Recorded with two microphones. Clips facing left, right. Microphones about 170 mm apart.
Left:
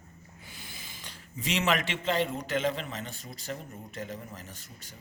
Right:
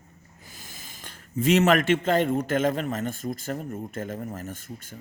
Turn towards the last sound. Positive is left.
turn(degrees=-50)  # may be behind; listen again after turning